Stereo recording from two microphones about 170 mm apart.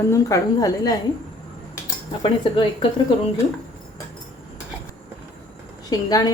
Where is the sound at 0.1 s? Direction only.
20° left (ahead or behind).